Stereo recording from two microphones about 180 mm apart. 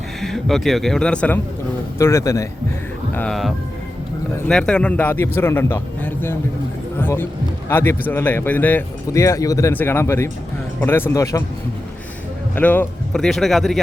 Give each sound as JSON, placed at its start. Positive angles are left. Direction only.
{"t": 0.2, "sound": "speech", "side_deg": 0}
{"t": 3.2, "sound": "speech", "side_deg": 0}
{"t": 12.5, "sound": "speech", "side_deg": 10}